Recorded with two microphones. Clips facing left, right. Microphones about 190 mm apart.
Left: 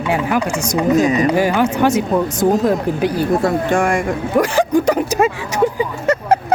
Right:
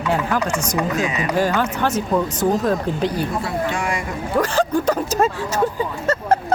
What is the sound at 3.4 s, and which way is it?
Speech, 50° left (ahead or behind).